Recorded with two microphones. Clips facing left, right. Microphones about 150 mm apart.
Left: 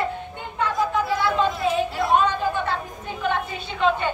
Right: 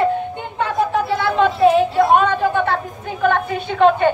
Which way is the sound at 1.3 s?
60° right (ahead or behind).